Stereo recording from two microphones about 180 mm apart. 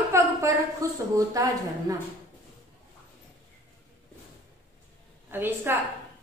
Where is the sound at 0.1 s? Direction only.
20° right (ahead or behind).